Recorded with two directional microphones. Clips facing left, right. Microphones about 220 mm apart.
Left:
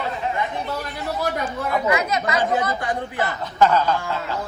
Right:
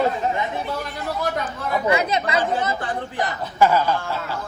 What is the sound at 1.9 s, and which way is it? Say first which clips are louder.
Speech: right 4 dB; 30° right (ahead or behind).